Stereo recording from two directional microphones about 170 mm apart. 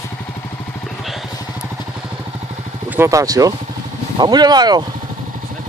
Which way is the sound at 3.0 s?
20° right (ahead or behind).